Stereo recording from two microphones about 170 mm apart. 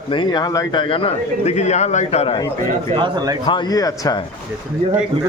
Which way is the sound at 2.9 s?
25° right (ahead or behind).